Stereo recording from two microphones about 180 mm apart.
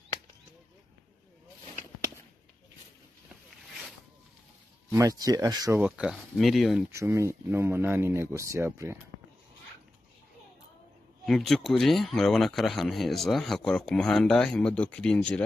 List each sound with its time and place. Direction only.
4.8 s speech: 20° right (ahead or behind)
5.8 s speech: 5° right (ahead or behind)
6.9 s speech: 15° right (ahead or behind)
11.2 s speech: centre (ahead or behind)